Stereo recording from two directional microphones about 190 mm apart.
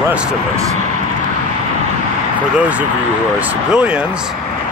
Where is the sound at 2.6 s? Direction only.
5° right (ahead or behind).